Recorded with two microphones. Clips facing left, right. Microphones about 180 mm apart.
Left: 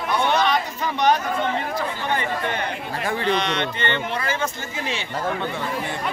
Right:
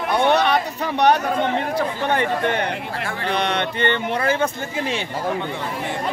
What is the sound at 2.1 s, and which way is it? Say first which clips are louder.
Speech: right 4 dB; 65° right (ahead or behind).